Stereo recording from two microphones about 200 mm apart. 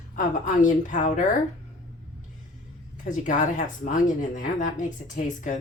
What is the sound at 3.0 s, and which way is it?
Speech, 40° left (ahead or behind).